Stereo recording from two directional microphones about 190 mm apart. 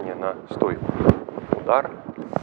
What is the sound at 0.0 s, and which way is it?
Speech, 15° right (ahead or behind).